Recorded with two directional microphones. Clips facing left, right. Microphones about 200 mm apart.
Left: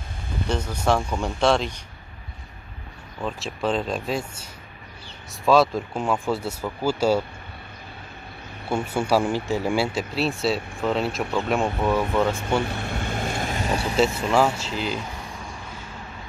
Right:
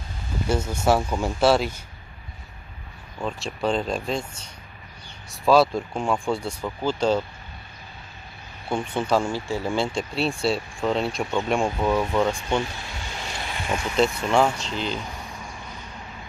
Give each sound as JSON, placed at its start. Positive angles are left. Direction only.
{"t": 0.5, "sound": "speech", "side_deg": -10}
{"t": 3.2, "sound": "speech", "side_deg": 0}
{"t": 8.6, "sound": "speech", "side_deg": 10}
{"t": 12.6, "sound": "vehicle", "side_deg": 55}
{"t": 14.3, "sound": "speech", "side_deg": 5}